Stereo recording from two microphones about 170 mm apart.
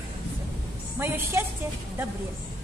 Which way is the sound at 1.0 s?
15° right (ahead or behind).